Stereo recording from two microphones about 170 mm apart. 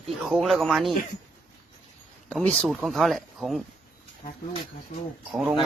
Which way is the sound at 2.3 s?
5° left (ahead or behind).